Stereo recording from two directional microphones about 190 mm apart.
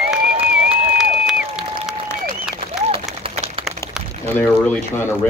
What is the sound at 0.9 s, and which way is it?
Applause, 5° right (ahead or behind).